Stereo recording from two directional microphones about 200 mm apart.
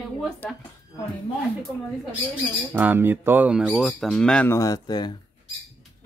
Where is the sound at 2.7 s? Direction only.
10° right (ahead or behind); by 5.1 s 20° left (ahead or behind).